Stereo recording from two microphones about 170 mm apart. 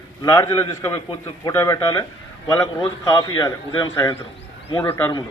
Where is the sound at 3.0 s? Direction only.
20° left (ahead or behind).